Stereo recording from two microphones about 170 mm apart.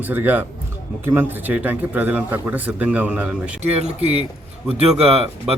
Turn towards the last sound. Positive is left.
turn(degrees=-35)  # may be behind; listen again after turning